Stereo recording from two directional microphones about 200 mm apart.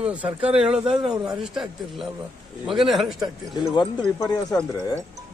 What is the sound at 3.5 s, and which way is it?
Speech, 20° left (ahead or behind).